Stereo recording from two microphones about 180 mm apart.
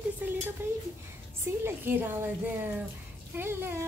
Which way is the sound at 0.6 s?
15° right (ahead or behind).